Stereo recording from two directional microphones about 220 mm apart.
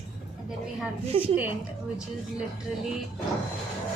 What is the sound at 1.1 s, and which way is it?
Speech, 25° right (ahead or behind).